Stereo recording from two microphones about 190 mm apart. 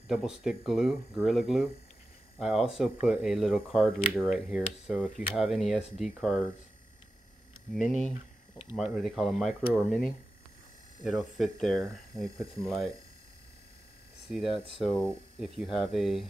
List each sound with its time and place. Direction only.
0.1 s speech: centre (ahead or behind)
8.7 s speech: centre (ahead or behind)
11.1 s speech: centre (ahead or behind)
14.3 s speech: centre (ahead or behind)